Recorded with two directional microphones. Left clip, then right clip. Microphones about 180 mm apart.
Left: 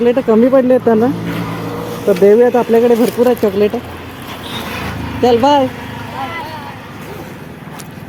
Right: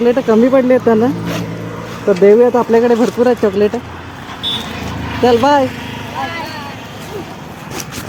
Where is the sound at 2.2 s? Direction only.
5° right (ahead or behind).